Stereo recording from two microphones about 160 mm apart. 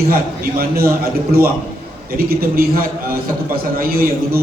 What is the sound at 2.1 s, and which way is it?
A man's voice, 70° right (ahead or behind).